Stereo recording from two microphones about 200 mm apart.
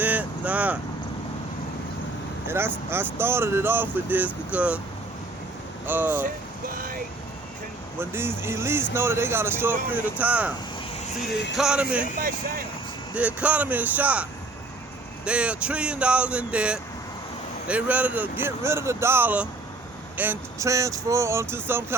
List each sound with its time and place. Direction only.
0.0 s vehicle: 10° right (ahead or behind)
2.5 s speech: 10° right (ahead or behind)
5.8 s speech: 10° right (ahead or behind)
6.2 s vehicle: 45° right (ahead or behind)
7.9 s speech: 10° right (ahead or behind)
11.5 s speech: 5° right (ahead or behind)
13.1 s speech: 5° right (ahead or behind)